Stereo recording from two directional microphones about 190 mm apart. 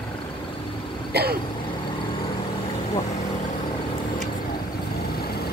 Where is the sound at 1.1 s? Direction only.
55° right (ahead or behind).